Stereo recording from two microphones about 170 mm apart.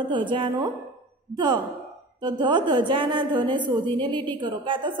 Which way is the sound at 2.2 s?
25° right (ahead or behind).